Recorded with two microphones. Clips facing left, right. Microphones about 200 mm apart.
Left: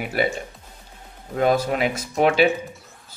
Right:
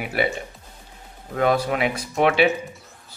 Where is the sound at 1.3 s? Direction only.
40° left (ahead or behind).